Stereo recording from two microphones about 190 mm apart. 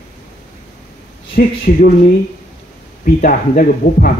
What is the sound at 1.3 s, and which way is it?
Speech, 55° left (ahead or behind).